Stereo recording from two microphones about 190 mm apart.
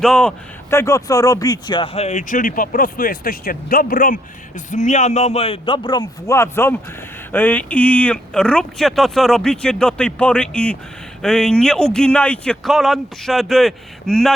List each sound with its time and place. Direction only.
0.0 s speech: 5° left (ahead or behind)